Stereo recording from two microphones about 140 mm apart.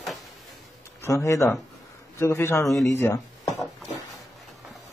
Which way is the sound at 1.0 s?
20° left (ahead or behind).